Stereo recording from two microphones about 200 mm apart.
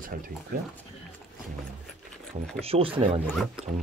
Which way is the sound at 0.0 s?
45° right (ahead or behind).